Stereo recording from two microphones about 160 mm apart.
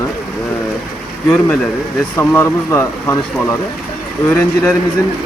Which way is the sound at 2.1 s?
15° left (ahead or behind).